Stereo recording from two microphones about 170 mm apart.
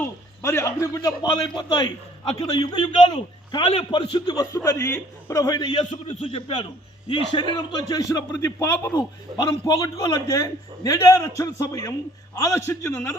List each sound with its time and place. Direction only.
0.0 s a man's voice: 15° left (ahead or behind)
6.1 s a man's voice: 40° left (ahead or behind)
7.1 s a man's voice: 30° left (ahead or behind)